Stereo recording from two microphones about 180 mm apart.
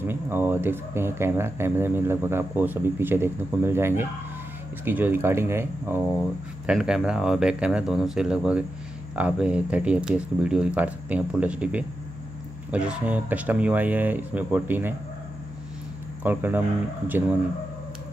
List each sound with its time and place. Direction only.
0.0 s speech: 10° right (ahead or behind)
6.1 s speech: 5° right (ahead or behind)
16.2 s speech: 10° right (ahead or behind)